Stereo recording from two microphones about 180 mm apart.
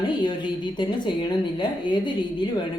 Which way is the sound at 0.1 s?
25° left (ahead or behind).